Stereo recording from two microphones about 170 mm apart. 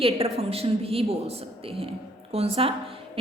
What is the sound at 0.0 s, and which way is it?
A woman's voice, 35° right (ahead or behind).